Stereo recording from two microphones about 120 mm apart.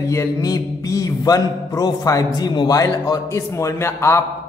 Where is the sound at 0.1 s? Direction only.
30° left (ahead or behind).